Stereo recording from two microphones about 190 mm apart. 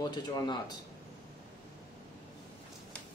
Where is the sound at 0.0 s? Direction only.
20° left (ahead or behind).